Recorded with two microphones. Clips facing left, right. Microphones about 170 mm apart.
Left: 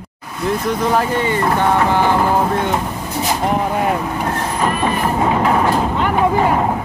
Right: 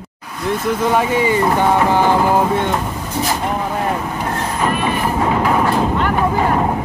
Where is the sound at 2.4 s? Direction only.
Centre (ahead or behind).